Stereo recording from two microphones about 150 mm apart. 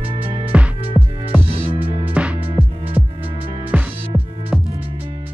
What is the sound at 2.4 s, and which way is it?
Music, 40° right (ahead or behind).